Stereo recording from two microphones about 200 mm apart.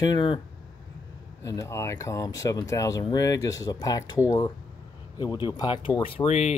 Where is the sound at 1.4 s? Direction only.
15° left (ahead or behind); by 6.5 s 35° left (ahead or behind).